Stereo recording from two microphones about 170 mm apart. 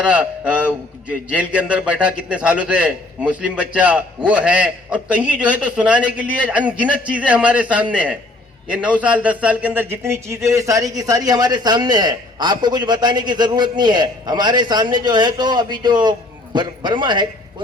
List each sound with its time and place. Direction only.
0.0 s a man's voice: 5° right (ahead or behind); by 17.2 s 25° right (ahead or behind)